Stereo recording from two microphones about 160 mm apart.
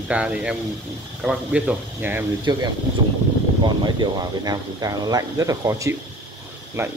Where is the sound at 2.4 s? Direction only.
25° right (ahead or behind).